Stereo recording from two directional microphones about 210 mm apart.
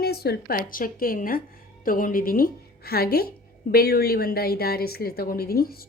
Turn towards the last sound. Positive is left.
turn(degrees=45)  # may be behind; listen again after turning